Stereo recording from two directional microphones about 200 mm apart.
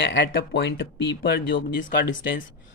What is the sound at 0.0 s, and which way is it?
Speech, 60° left (ahead or behind).